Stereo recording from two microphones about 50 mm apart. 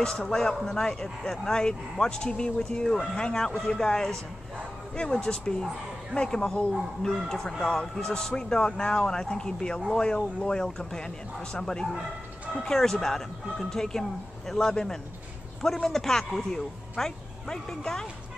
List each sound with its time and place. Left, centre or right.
0.4 s speech: centre